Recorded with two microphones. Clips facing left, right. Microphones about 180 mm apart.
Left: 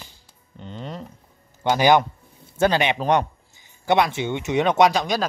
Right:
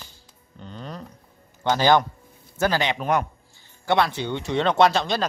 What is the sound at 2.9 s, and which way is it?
Speech, 30° left (ahead or behind).